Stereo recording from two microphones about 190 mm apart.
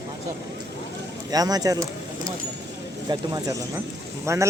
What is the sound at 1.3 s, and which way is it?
Speech, 20° right (ahead or behind).